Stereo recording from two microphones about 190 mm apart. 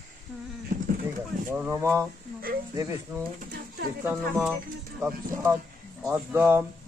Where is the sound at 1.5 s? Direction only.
10° right (ahead or behind).